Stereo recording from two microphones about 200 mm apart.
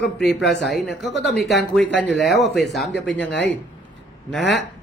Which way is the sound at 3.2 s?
65° left (ahead or behind).